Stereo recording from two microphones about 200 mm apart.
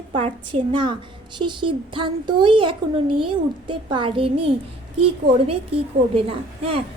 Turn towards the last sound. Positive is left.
turn(degrees=-30)  # may be behind; listen again after turning